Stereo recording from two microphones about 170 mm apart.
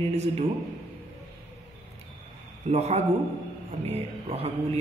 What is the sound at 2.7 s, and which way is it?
A man's voice, 40° right (ahead or behind).